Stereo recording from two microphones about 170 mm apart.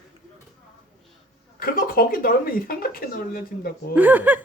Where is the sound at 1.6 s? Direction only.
55° left (ahead or behind).